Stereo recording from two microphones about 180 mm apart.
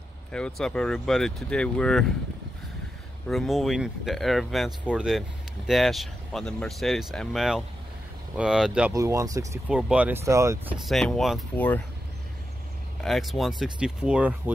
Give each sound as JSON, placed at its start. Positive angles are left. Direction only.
{"t": 0.3, "sound": "speech", "side_deg": 5}
{"t": 3.3, "sound": "speech", "side_deg": 0}
{"t": 8.9, "sound": "speech", "side_deg": -20}
{"t": 9.7, "sound": "speech", "side_deg": -5}
{"t": 10.9, "sound": "speech", "side_deg": 0}
{"t": 13.0, "sound": "speech", "side_deg": 0}